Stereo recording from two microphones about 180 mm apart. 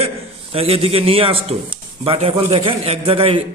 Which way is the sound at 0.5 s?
30° right (ahead or behind).